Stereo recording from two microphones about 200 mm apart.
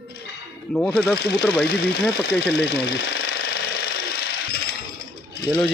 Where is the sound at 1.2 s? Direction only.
55° left (ahead or behind).